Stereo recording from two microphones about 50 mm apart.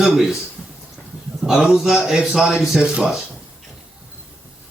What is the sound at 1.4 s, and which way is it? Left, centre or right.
Speech, centre.